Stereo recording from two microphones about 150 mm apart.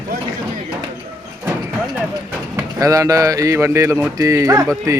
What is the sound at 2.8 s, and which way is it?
Speech, 20° right (ahead or behind).